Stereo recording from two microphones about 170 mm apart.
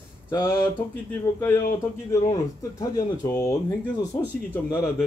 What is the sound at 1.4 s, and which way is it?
A man's voice, 10° left (ahead or behind).